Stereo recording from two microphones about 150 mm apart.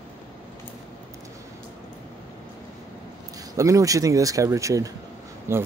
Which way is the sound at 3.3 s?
20° right (ahead or behind).